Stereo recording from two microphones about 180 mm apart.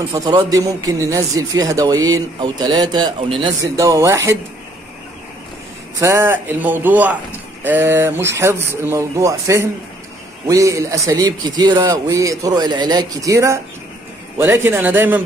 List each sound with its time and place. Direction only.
0.1 s a man's voice: 20° right (ahead or behind)
5.9 s a man's voice: 15° right (ahead or behind)